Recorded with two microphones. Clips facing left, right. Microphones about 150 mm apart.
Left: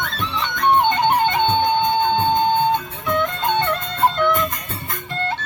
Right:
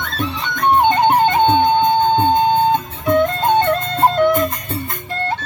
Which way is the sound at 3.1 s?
40° right (ahead or behind).